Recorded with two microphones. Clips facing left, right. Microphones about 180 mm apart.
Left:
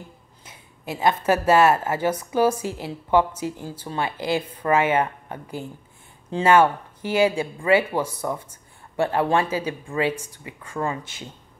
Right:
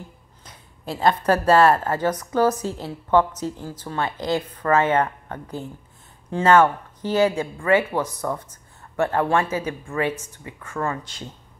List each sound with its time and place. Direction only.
0.9 s a woman's voice: 5° left (ahead or behind)
10.1 s speech: 30° left (ahead or behind)
10.8 s a woman's voice: 15° left (ahead or behind)